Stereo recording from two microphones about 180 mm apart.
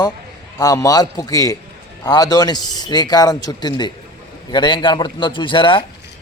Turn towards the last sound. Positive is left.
turn(degrees=30)  # may be behind; listen again after turning